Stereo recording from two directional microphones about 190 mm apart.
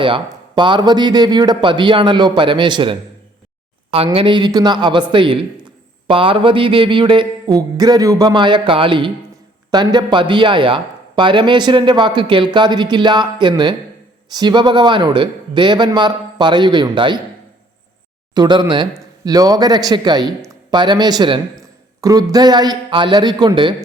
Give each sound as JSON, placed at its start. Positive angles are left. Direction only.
{"t": 0.0, "sound": "speech", "side_deg": -25}
{"t": 18.3, "sound": "speech", "side_deg": -20}